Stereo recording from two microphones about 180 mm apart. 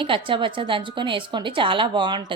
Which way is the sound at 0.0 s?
30° right (ahead or behind).